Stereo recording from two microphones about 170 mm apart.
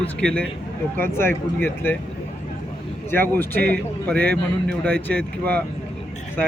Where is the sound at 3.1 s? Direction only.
10° left (ahead or behind).